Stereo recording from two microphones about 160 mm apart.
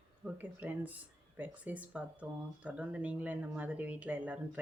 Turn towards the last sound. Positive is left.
turn(degrees=-10)  # may be behind; listen again after turning